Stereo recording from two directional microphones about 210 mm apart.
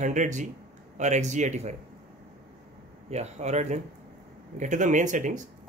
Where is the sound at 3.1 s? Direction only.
30° right (ahead or behind).